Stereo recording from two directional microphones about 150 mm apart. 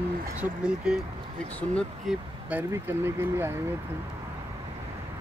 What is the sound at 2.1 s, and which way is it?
Speech, 10° right (ahead or behind).